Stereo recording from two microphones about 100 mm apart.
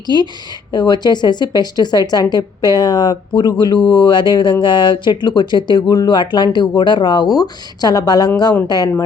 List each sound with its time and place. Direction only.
0.7 s speech: 40° left (ahead or behind)